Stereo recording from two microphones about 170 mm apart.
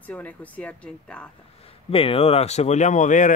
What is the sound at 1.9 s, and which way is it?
Speech, 35° left (ahead or behind).